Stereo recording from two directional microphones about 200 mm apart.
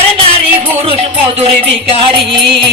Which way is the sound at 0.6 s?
30° right (ahead or behind).